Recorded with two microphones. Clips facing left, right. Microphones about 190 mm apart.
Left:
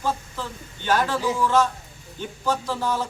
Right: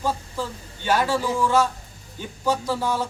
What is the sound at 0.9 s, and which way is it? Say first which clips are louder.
A man's voice: right 1 dB; 10° right (ahead or behind).